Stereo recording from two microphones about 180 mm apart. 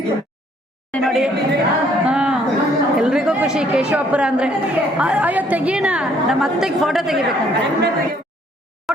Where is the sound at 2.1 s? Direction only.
5° right (ahead or behind).